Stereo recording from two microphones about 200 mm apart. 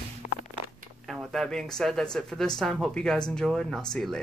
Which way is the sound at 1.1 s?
Centre (ahead or behind).